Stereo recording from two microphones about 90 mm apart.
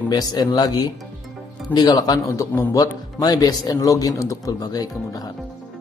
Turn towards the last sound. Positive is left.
turn(degrees=45)  # may be behind; listen again after turning